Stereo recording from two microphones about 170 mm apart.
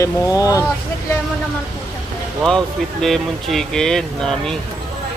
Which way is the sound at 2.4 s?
Centre (ahead or behind).